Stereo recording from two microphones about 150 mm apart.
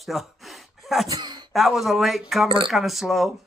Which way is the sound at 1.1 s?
30° right (ahead or behind).